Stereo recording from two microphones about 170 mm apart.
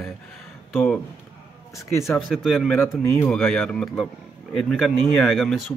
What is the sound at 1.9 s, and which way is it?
Speech, 15° left (ahead or behind).